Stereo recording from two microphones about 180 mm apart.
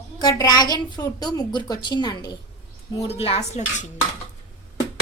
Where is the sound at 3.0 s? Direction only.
35° left (ahead or behind).